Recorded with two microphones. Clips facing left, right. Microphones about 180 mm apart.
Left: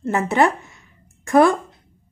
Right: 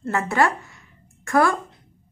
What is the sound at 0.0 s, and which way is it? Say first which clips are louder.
Speech: left 3 dB; 20° left (ahead or behind).